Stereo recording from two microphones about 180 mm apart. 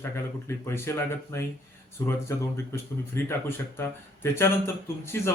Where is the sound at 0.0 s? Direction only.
15° left (ahead or behind).